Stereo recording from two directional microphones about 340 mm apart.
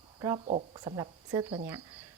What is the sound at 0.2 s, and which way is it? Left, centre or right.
Speech, centre.